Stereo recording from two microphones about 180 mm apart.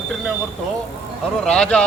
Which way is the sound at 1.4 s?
5° left (ahead or behind).